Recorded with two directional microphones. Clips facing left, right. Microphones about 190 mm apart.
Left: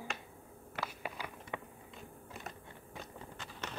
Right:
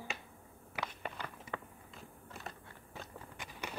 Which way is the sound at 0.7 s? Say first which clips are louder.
Even; 5° left (ahead or behind).